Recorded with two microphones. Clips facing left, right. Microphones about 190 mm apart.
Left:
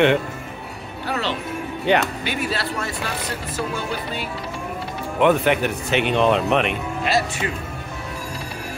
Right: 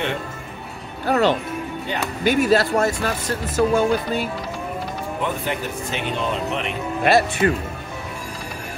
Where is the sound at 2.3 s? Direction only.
45° right (ahead or behind).